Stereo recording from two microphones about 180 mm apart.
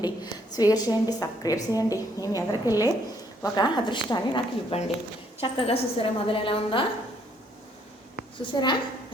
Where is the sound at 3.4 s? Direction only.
25° left (ahead or behind).